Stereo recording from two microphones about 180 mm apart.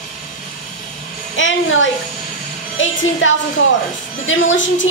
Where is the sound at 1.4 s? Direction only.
90° left.